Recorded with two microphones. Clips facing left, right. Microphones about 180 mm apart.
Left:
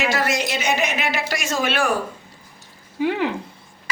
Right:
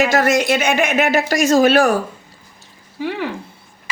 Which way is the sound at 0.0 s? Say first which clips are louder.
Right 7 dB; 45° right (ahead or behind).